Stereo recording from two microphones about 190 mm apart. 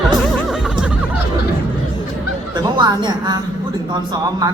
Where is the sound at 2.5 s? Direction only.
20° right (ahead or behind).